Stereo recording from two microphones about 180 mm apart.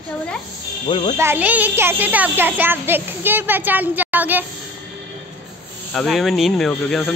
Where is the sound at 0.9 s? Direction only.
25° left (ahead or behind).